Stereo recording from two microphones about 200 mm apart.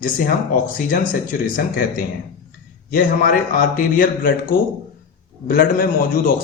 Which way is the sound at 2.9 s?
45° left (ahead or behind).